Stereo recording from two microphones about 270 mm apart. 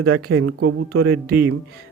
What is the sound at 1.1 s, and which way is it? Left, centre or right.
Speech, right.